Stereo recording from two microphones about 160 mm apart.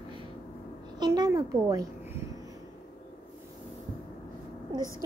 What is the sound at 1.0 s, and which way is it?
Speech, 25° right (ahead or behind).